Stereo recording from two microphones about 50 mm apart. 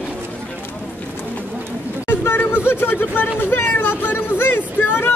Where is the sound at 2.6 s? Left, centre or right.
Left.